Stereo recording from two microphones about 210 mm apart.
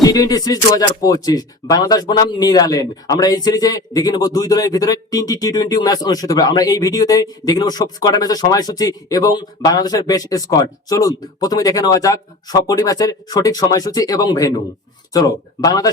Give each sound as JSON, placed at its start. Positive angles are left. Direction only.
{"t": 0.0, "sound": "speech", "side_deg": 15}